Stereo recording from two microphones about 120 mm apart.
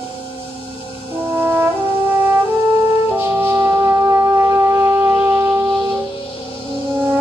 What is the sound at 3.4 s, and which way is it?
Shofar, 20° right (ahead or behind).